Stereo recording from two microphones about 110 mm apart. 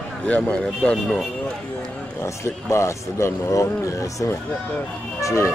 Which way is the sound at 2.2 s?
25° left (ahead or behind).